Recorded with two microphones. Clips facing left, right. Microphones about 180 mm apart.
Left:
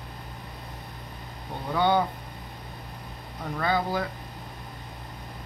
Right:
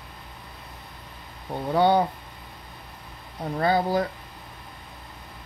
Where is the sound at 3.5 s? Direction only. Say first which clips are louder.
Right 4 dB; 35° right (ahead or behind).